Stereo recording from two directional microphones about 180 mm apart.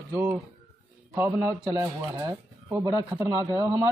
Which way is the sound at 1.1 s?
15° right (ahead or behind).